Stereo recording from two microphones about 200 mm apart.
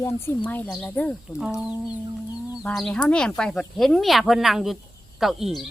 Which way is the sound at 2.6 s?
5° left (ahead or behind).